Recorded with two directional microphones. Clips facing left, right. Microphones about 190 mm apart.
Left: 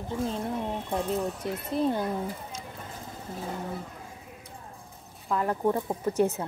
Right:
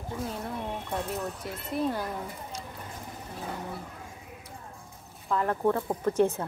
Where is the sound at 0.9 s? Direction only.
20° left (ahead or behind).